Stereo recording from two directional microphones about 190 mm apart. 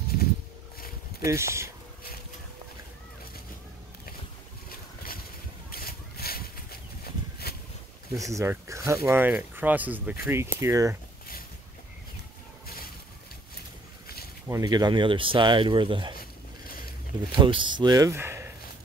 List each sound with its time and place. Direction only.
0.1 s a sound: 50° left (ahead or behind)
1.2 s speech: 15° right (ahead or behind)
4.6 s boat: 50° left (ahead or behind)
5.7 s a sound: 55° left (ahead or behind)
8.1 s speech: 15° right (ahead or behind)
14.5 s speech: 20° right (ahead or behind)
17.4 s speech: 25° right (ahead or behind)